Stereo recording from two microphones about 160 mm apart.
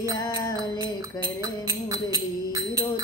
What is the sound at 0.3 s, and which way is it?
Music, 25° right (ahead or behind).